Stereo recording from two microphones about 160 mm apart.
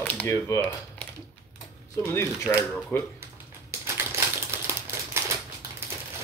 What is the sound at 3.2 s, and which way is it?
Typewriter, 15° right (ahead or behind).